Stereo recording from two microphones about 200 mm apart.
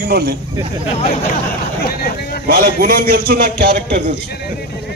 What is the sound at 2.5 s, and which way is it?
A man's voice, 50° right (ahead or behind).